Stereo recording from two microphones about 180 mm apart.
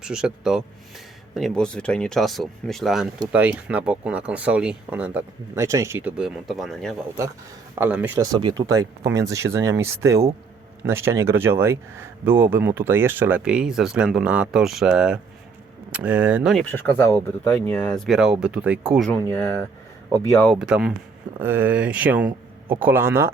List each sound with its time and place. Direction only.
0.0 s speech: 5° right (ahead or behind)
7.8 s speech: 10° right (ahead or behind)
16.7 s speech: 10° left (ahead or behind)
20.6 s speech: 5° right (ahead or behind)